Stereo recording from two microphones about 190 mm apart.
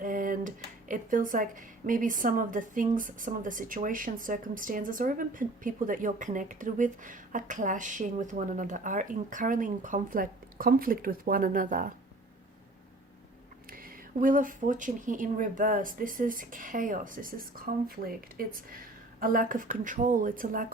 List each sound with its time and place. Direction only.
0.0 s speech: 45° right (ahead or behind)
13.7 s speech: 50° right (ahead or behind)